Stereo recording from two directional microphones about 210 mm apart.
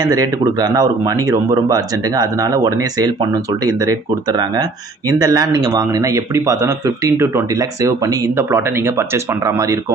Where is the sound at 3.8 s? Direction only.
20° right (ahead or behind).